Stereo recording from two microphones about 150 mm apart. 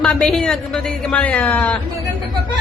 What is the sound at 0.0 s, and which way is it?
Speech, centre (ahead or behind).